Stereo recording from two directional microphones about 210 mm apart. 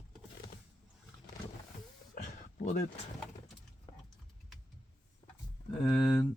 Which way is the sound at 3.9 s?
15° left (ahead or behind).